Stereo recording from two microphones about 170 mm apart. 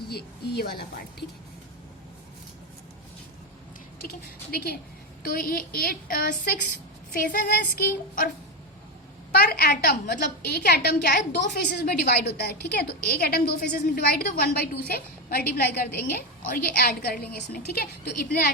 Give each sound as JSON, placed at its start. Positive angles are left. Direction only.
{"t": 0.1, "sound": "a woman's voice", "side_deg": 70}
{"t": 4.5, "sound": "a woman's voice", "side_deg": 65}
{"t": 9.3, "sound": "a woman's voice", "side_deg": 65}
{"t": 11.3, "sound": "a woman's voice", "side_deg": 55}